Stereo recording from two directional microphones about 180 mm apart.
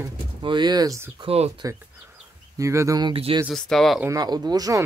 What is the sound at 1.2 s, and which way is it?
Speech, 35° right (ahead or behind).